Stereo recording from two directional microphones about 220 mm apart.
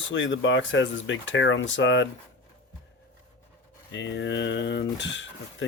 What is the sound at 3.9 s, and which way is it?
Speech, 55° left (ahead or behind).